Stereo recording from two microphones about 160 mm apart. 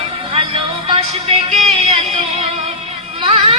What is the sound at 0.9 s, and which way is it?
Music, 40° right (ahead or behind).